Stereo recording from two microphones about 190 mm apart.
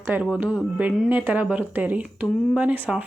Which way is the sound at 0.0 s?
10° right (ahead or behind).